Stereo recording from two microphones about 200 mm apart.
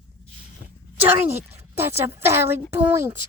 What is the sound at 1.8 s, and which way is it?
Speech, 10° right (ahead or behind).